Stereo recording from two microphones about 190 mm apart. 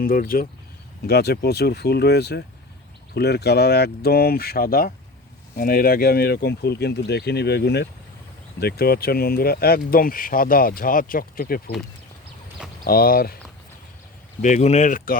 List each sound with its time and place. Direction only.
0.0 s speech: 50° left (ahead or behind)
12.8 s speech: 50° left (ahead or behind)
14.4 s speech: 40° left (ahead or behind)